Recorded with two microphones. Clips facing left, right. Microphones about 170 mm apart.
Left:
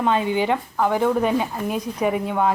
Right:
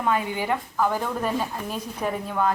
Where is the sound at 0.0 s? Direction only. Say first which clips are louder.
Left 5 dB; 25° left (ahead or behind).